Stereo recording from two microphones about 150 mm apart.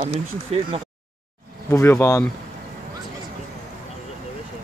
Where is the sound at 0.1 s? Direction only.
45° right (ahead or behind).